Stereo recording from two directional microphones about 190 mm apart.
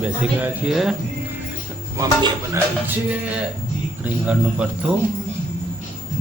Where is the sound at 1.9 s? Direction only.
15° right (ahead or behind).